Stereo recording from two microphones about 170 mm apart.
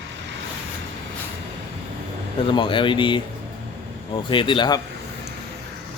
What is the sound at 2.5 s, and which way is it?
Speech, 30° left (ahead or behind).